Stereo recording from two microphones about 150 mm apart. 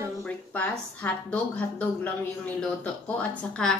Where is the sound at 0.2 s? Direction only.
10° left (ahead or behind).